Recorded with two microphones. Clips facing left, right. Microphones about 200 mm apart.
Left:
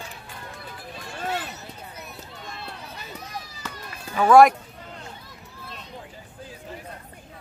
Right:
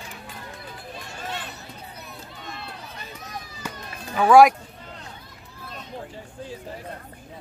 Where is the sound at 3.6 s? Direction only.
15° right (ahead or behind).